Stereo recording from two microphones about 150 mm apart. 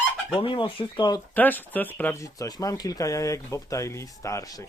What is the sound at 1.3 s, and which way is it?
Goose, 10° left (ahead or behind).